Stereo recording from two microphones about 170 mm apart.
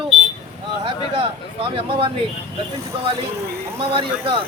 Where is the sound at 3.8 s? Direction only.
30° right (ahead or behind).